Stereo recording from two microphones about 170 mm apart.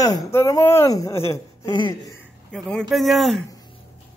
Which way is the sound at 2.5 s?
5° left (ahead or behind).